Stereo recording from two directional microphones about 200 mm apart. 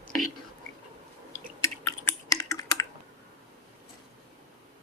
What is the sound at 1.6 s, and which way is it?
Typing, 15° left (ahead or behind).